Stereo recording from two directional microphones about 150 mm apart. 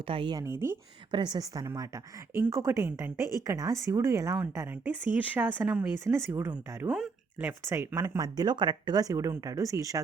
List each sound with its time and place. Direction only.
0.1 s speech: 30° right (ahead or behind)
0.4 s a woman's voice: 15° right (ahead or behind)
1.1 s a woman's voice: 30° right (ahead or behind); by 5.9 s 10° right (ahead or behind)
6.1 s speech: 20° right (ahead or behind)